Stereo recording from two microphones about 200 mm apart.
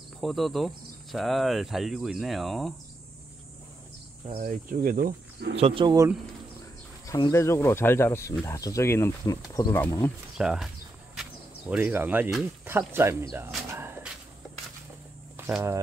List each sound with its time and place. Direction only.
0.2 s speech: centre (ahead or behind)
4.4 s speech: 40° right (ahead or behind)
5.6 s speech: 25° right (ahead or behind)
7.1 s speech: 15° left (ahead or behind)
10.3 s speech: centre (ahead or behind)
11.7 s speech: 10° right (ahead or behind)
13.7 s a sound: 10° right (ahead or behind)
15.3 s speech: 10° right (ahead or behind)